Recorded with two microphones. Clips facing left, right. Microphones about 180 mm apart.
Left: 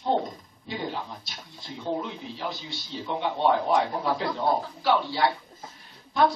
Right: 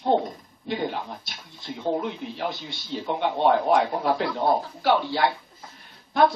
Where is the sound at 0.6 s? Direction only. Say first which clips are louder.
Right 5 dB; 60° right (ahead or behind).